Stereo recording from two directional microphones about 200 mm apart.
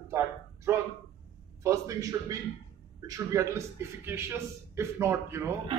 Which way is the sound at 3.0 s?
15° right (ahead or behind).